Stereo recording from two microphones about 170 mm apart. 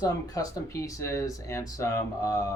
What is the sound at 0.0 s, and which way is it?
Speech, 20° left (ahead or behind).